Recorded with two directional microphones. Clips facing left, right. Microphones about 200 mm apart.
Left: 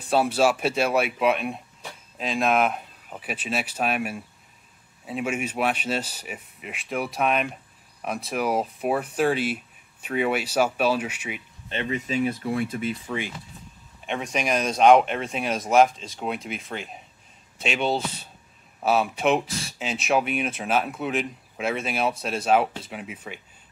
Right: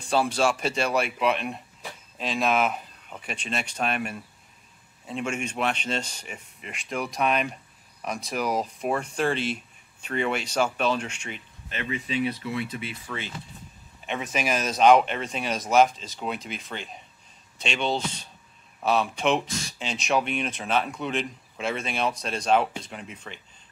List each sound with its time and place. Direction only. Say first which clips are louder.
0.0 s speech: left 3 dB; 5° left (ahead or behind)
11.7 s speech: left 4 dB; 30° left (ahead or behind)
12.1 s speech: left 2 dB; 45° left (ahead or behind)
13.0 s speech: left 5 dB; 15° left (ahead or behind)
14.0 s speech: left 1 dB; centre (ahead or behind)